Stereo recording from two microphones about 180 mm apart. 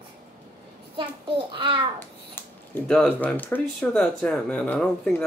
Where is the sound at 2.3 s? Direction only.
10° left (ahead or behind).